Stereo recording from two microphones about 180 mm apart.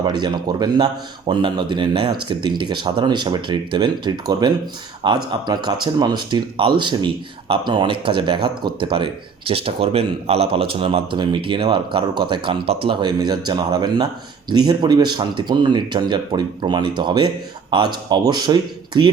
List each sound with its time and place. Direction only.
0.0 s speech: 25° right (ahead or behind)